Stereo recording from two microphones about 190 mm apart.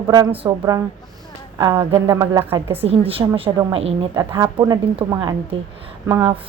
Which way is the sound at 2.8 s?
30° right (ahead or behind).